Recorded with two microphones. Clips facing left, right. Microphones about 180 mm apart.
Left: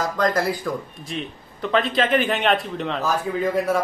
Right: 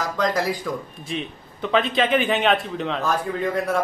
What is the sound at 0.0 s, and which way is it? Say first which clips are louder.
A man's voice: left 1 dB; 5° left (ahead or behind).